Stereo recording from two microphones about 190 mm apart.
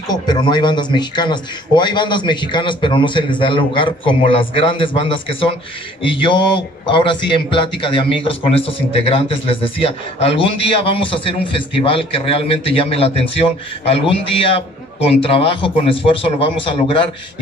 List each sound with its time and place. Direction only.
0.1 s a man's voice: 20° left (ahead or behind)